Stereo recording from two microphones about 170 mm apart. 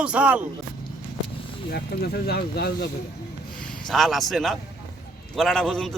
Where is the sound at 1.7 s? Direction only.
70° left (ahead or behind).